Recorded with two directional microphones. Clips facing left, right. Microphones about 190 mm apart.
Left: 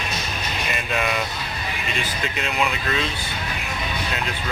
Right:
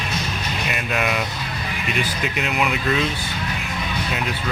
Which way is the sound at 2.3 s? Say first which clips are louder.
Right 2 dB; 10° right (ahead or behind).